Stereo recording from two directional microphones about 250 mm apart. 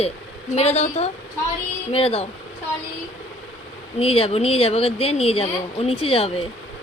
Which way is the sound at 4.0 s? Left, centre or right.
Left.